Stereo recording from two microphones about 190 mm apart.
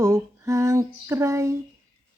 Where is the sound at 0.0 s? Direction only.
20° right (ahead or behind).